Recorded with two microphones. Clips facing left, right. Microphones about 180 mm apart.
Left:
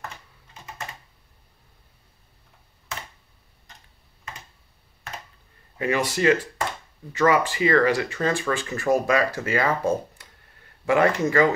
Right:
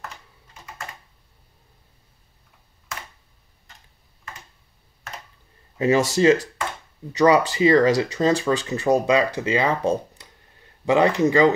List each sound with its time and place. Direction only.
5.8 s speech: 25° right (ahead or behind)